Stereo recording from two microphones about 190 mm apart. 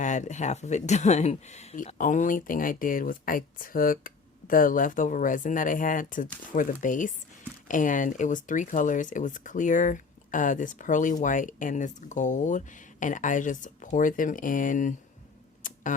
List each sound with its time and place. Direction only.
0.0 s speech: 40° left (ahead or behind)
15.6 s tick-tock: 45° left (ahead or behind)